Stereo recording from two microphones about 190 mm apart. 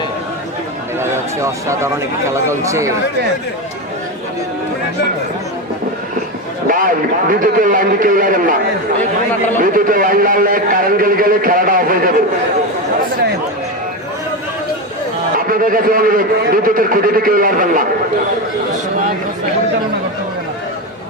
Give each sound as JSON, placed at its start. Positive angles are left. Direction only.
{"t": 0.9, "sound": "speech", "side_deg": -15}
{"t": 6.7, "sound": "a man's voice", "side_deg": -50}
{"t": 9.7, "sound": "a man's voice", "side_deg": -45}
{"t": 15.4, "sound": "a man's voice", "side_deg": -45}